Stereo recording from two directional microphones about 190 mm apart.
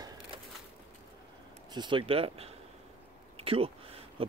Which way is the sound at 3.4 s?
30° right (ahead or behind).